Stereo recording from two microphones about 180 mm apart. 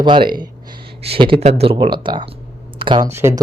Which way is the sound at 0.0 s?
25° right (ahead or behind).